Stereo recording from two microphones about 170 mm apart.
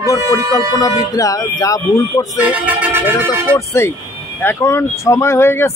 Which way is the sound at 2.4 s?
10° right (ahead or behind).